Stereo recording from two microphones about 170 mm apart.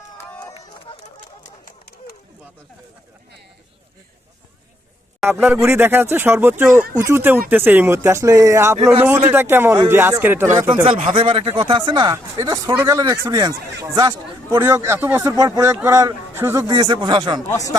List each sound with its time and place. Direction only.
0.3 s run: 25° left (ahead or behind)
1.0 s a sound: 45° left (ahead or behind)
5.4 s speech: 15° right (ahead or behind)
11.1 s speech: 30° right (ahead or behind)